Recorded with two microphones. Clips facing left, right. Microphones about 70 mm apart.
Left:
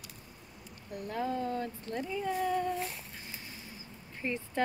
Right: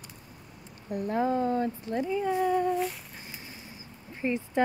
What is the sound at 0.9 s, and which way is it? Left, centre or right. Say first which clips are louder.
Speech: right 7 dB; right.